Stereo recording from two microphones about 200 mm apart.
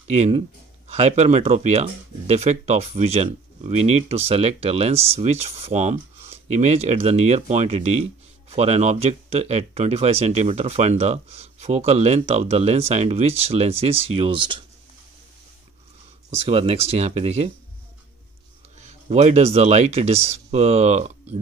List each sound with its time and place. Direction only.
0.1 s speech: 30° right (ahead or behind)
16.3 s speech: 30° right (ahead or behind)
18.8 s speech: 35° right (ahead or behind)